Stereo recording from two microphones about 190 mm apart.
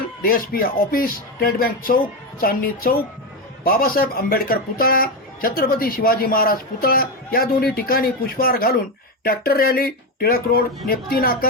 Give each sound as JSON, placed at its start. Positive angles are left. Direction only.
{"t": 0.2, "sound": "speech", "side_deg": 50}